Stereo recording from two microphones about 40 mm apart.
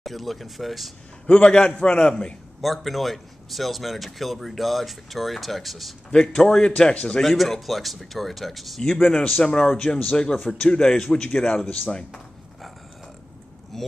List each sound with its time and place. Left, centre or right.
0.0 s speech: centre
1.2 s a man's voice: left
2.6 s speech: centre
6.1 s a man's voice: centre
6.8 s a man's voice: left
7.2 s speech: centre
8.8 s a man's voice: centre
9.2 s a man's voice: left
13.7 s speech: centre